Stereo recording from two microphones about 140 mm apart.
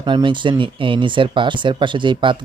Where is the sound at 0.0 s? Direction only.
35° right (ahead or behind).